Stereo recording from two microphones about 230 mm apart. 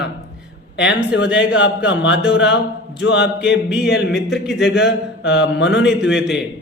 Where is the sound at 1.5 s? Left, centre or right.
Left.